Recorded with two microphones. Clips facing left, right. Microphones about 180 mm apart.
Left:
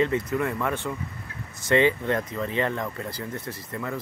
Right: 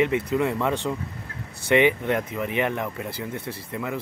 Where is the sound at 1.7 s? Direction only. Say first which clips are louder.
Right 2 dB; 15° right (ahead or behind).